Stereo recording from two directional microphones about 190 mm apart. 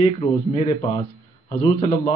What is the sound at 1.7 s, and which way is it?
Speech, 25° left (ahead or behind).